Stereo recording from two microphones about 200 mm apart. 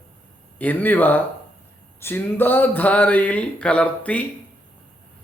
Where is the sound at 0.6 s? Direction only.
10° left (ahead or behind).